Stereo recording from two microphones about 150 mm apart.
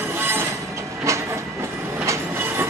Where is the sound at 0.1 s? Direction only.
15° right (ahead or behind).